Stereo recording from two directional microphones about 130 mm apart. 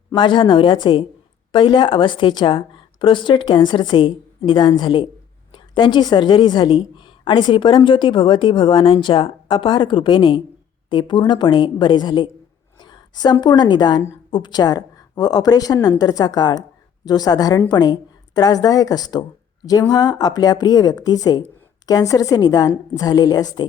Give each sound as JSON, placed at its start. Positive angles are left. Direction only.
{"t": 0.1, "sound": "a woman's voice", "side_deg": 40}